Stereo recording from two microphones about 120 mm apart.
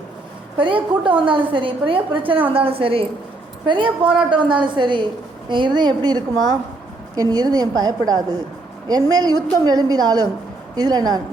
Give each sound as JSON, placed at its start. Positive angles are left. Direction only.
{"t": 0.5, "sound": "a woman's voice", "side_deg": -45}